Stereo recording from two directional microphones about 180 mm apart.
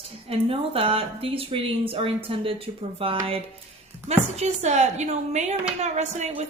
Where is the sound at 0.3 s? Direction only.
30° right (ahead or behind).